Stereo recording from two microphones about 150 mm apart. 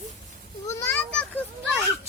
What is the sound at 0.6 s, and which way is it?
Children playing, 15° left (ahead or behind).